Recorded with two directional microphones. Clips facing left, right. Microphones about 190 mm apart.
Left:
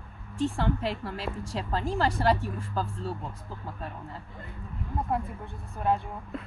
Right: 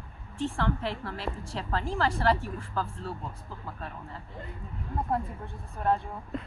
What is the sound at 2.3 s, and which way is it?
Speech, 15° left (ahead or behind).